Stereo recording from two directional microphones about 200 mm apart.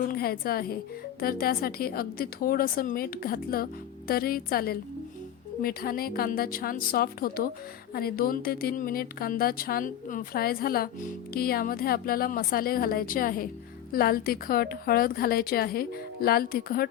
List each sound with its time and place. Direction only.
0.1 s a woman's voice: 50° left (ahead or behind)